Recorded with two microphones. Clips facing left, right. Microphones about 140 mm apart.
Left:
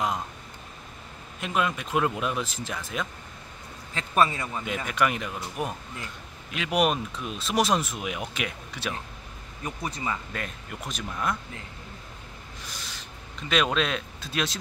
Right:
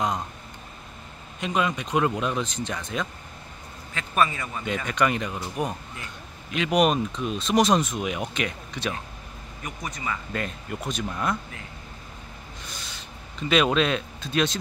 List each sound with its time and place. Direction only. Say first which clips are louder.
1.4 s speech: right 2 dB; centre (ahead or behind)
3.9 s a man's voice: left 1 dB; 30° left (ahead or behind)
4.6 s speech: right 3 dB; 5° left (ahead or behind)
9.6 s a man's voice: left 2 dB; 30° left (ahead or behind)
10.3 s speech: right 5 dB; centre (ahead or behind)
13.4 s speech: right 4 dB; centre (ahead or behind)